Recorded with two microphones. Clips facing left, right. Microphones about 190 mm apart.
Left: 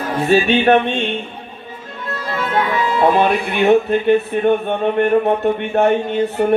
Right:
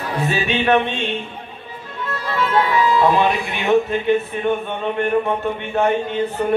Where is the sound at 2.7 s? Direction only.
55° left (ahead or behind).